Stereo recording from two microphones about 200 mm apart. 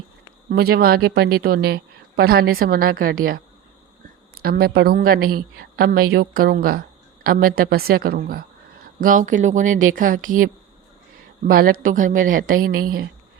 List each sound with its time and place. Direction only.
0.5 s a woman's voice: 50° right (ahead or behind)
4.4 s a woman's voice: 50° right (ahead or behind)